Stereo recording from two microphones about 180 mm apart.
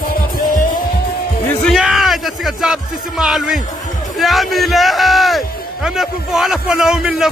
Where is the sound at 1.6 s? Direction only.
Centre (ahead or behind).